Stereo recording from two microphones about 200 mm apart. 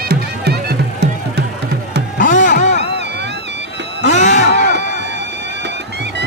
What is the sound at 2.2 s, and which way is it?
Music, 40° left (ahead or behind).